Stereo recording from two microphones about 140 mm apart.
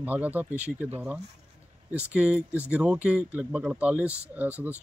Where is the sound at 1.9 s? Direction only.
5° right (ahead or behind).